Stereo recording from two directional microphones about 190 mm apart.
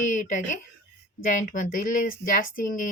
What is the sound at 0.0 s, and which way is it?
A woman's voice, 40° left (ahead or behind).